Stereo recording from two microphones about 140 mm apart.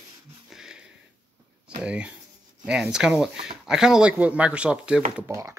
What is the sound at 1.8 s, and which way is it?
Speech, 10° right (ahead or behind).